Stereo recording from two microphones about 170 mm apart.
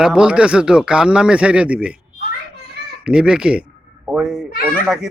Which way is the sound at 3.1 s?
5° right (ahead or behind).